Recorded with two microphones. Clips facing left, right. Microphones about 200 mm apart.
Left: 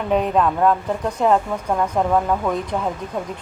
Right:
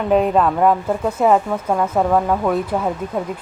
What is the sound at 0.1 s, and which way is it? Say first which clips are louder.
Speech: right 3 dB; 5° right (ahead or behind).